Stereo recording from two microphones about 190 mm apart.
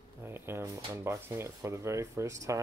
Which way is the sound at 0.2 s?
10° right (ahead or behind).